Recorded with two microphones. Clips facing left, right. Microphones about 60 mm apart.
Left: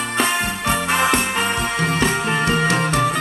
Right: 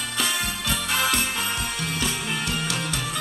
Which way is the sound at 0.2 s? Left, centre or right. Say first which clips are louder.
Left 7 dB; left.